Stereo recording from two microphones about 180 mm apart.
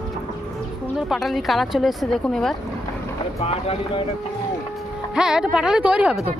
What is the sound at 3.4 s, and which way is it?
Speech, 35° left (ahead or behind).